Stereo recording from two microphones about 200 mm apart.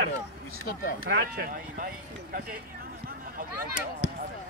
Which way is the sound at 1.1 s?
50° right (ahead or behind).